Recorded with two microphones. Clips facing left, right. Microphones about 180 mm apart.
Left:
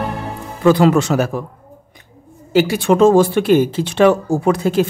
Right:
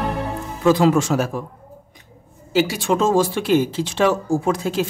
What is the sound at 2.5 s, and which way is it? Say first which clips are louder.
Speech: left 6 dB; 60° left (ahead or behind).